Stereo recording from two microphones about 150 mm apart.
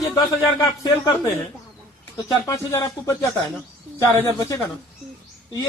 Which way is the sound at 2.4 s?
20° left (ahead or behind).